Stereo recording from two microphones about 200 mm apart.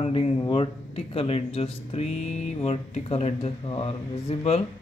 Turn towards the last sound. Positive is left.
turn(degrees=30)  # may be behind; listen again after turning